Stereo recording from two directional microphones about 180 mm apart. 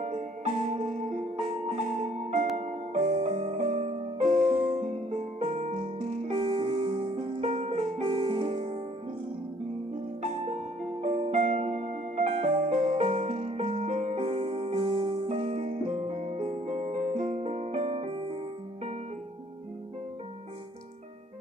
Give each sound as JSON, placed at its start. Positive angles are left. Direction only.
{"t": 0.0, "sound": "music", "side_deg": -40}
{"t": 10.2, "sound": "music", "side_deg": -40}